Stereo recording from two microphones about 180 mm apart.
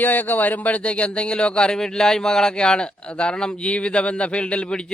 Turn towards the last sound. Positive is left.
turn(degrees=5)  # may be behind; listen again after turning